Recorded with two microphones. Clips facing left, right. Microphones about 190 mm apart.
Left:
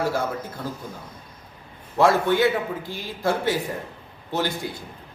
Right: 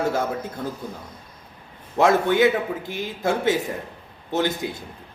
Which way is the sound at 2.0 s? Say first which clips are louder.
Right 1 dB; 20° right (ahead or behind).